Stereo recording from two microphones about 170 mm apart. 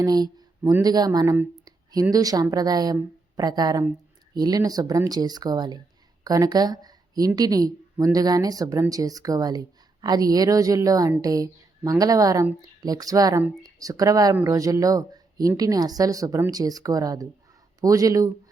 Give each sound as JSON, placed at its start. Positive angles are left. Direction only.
{"t": 0.0, "sound": "speech", "side_deg": -25}